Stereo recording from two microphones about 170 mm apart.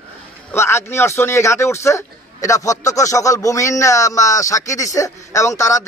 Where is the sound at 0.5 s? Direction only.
15° left (ahead or behind).